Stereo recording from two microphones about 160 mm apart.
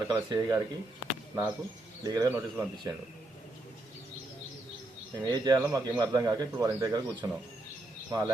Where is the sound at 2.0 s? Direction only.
20° right (ahead or behind).